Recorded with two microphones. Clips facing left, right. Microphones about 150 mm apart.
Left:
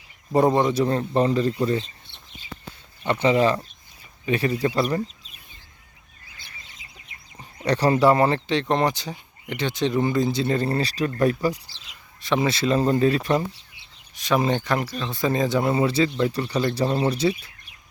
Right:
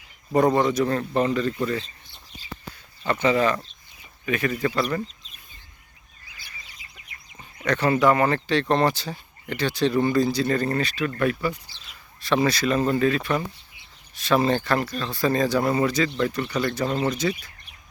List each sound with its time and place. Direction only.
0.3 s speech: 25° left (ahead or behind)
3.1 s speech: 25° left (ahead or behind)
6.3 s speech: 20° left (ahead or behind)
11.9 s speech: 20° left (ahead or behind)
14.2 s speech: 15° left (ahead or behind)
16.0 s speech: 15° left (ahead or behind)
16.3 s speech: 30° left (ahead or behind)